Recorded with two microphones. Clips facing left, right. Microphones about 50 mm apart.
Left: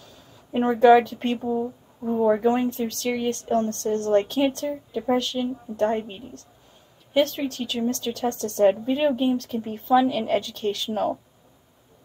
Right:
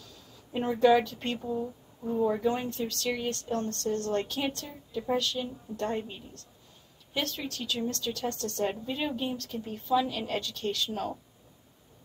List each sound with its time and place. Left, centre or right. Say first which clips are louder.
0.0 s speech: left 3 dB; left
2.2 s a woman's voice: left 9 dB; left